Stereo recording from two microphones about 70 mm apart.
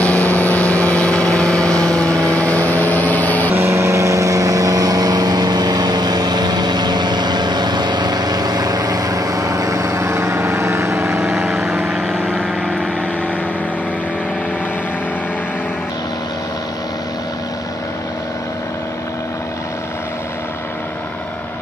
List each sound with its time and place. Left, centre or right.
0.0 s vehicle: left
3.5 s vehicle: right
11.3 s vehicle: centre